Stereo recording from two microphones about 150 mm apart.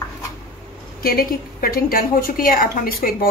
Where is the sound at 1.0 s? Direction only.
75° left (ahead or behind).